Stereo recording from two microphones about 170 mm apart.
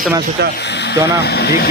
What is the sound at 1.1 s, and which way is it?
Speech, 75° left (ahead or behind).